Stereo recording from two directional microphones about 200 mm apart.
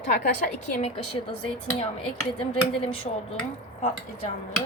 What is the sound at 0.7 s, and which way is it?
Chopping, 35° left (ahead or behind).